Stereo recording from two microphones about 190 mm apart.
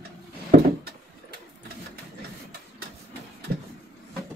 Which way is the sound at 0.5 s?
50° right (ahead or behind).